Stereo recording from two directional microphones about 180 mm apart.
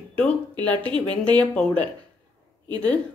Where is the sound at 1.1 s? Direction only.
10° left (ahead or behind).